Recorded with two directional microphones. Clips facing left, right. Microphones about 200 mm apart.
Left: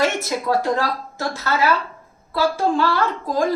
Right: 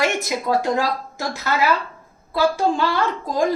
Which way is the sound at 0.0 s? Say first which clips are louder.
Left 1 dB; 15° right (ahead or behind).